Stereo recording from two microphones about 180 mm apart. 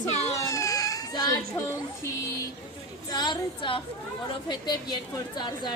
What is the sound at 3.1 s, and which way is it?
Speech, 25° left (ahead or behind).